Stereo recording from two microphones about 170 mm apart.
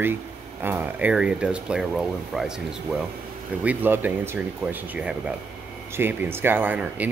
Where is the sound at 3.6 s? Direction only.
10° right (ahead or behind).